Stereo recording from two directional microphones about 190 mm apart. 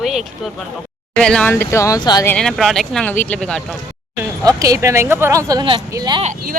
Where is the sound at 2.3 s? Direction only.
5° left (ahead or behind).